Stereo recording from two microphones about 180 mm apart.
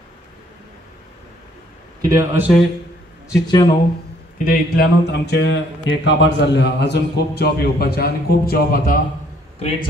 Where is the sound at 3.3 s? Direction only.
20° left (ahead or behind).